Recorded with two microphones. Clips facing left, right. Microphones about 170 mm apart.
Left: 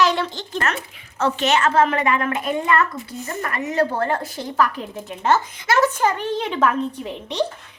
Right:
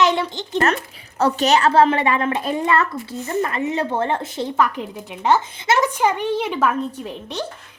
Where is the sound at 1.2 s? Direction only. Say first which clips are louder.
Right 3 dB; 35° right (ahead or behind); by 6.7 s 5° right (ahead or behind).